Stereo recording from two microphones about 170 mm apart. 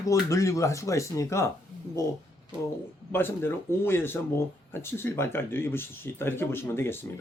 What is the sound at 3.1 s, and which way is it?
Speech, 10° left (ahead or behind).